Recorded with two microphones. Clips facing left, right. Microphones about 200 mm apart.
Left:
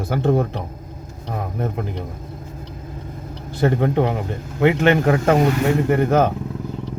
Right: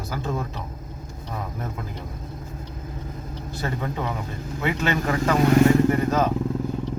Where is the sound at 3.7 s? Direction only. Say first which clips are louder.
Left 10 dB; 70° left (ahead or behind).